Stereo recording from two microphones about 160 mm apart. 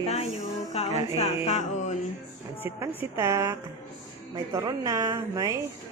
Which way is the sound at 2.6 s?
15° right (ahead or behind).